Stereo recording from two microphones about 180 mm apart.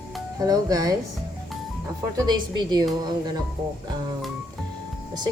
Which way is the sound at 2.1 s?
25° right (ahead or behind).